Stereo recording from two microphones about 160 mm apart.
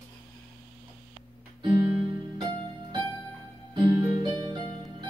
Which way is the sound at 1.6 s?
25° right (ahead or behind).